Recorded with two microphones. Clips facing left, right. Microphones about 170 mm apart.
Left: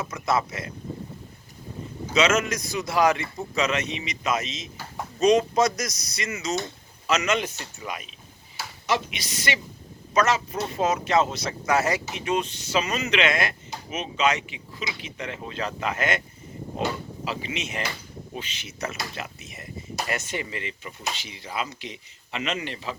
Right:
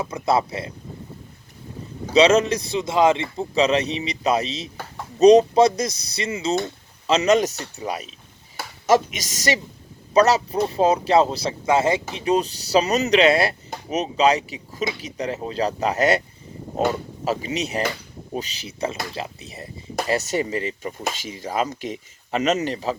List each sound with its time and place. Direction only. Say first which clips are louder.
0.0 s speech: right 4 dB; 30° right (ahead or behind)
2.1 s speech: right 7 dB; 35° right (ahead or behind)